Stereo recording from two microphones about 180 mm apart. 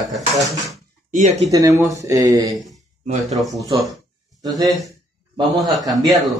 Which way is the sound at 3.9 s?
20° right (ahead or behind).